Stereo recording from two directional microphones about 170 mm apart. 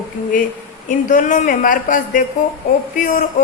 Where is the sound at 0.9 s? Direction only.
45° left (ahead or behind).